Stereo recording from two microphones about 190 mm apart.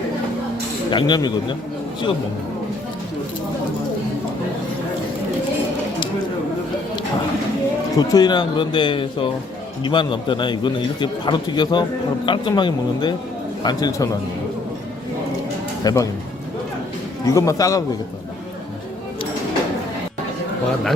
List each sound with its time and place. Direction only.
0.9 s speech: 25° left (ahead or behind)
7.9 s a man's voice: 20° left (ahead or behind)
15.8 s speech: 20° left (ahead or behind)
17.2 s a man's voice: 15° left (ahead or behind)